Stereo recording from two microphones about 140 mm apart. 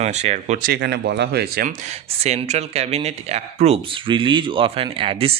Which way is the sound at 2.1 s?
50° right (ahead or behind).